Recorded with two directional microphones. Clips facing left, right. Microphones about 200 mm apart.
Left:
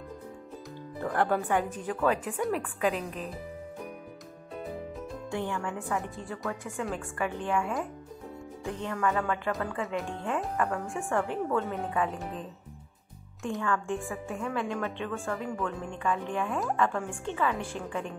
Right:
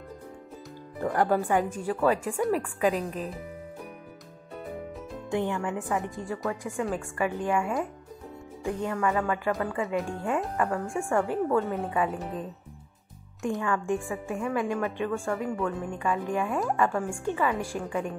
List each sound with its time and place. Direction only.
1.0 s speech: 10° right (ahead or behind)
5.3 s speech: 15° right (ahead or behind)
13.4 s speech: 15° right (ahead or behind)